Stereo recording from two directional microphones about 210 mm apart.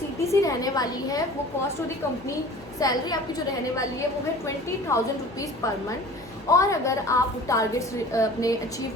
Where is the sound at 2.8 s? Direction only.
15° left (ahead or behind).